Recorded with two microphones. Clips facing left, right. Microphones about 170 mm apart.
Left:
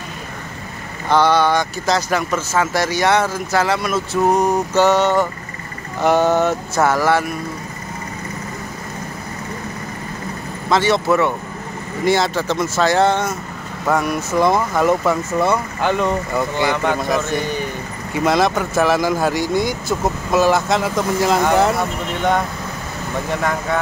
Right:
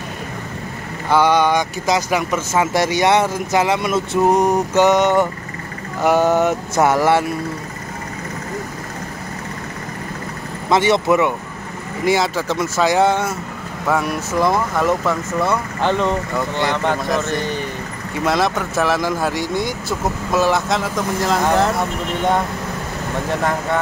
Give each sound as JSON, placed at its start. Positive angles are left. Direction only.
{"t": 1.0, "sound": "speech", "side_deg": -10}
{"t": 4.3, "sound": "vehicle", "side_deg": -15}
{"t": 10.7, "sound": "vehicle", "side_deg": -20}
{"t": 13.8, "sound": "speech", "side_deg": 0}